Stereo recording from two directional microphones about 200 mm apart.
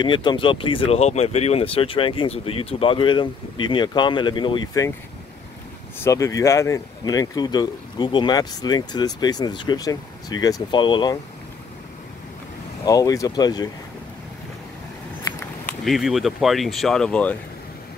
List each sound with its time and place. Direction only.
0.0 s speech: 25° left (ahead or behind)
6.0 s speech: 15° left (ahead or behind)
12.8 s speech: 20° left (ahead or behind)
15.8 s speech: centre (ahead or behind)